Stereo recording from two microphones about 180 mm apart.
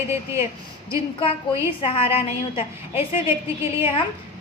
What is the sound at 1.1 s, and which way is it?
A woman's voice, 30° left (ahead or behind).